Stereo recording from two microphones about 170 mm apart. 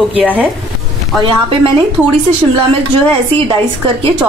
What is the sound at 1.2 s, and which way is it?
Speech, 30° right (ahead or behind).